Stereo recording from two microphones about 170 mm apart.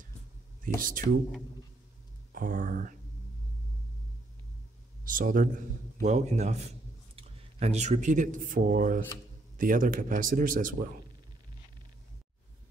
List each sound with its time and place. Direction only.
0.7 s speech: 55° right (ahead or behind)
2.3 s speech: 55° right (ahead or behind)
5.0 s speech: 55° right (ahead or behind)
5.9 s a man's voice: 45° right (ahead or behind)